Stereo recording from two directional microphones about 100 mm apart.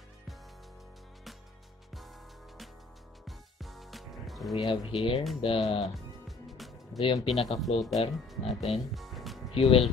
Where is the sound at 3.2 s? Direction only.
Centre (ahead or behind).